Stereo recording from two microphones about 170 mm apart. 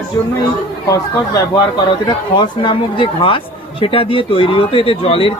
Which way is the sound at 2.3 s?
25° left (ahead or behind).